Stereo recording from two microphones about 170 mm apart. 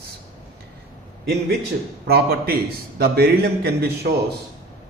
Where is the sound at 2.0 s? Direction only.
70° right (ahead or behind).